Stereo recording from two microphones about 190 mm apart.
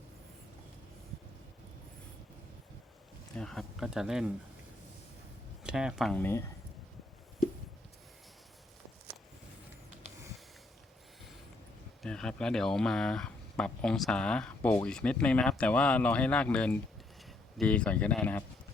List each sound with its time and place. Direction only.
3.3 s speech: 5° left (ahead or behind)
5.6 s speech: 5° right (ahead or behind)
6.1 s speech: 10° left (ahead or behind)
12.0 s speech: 5° left (ahead or behind)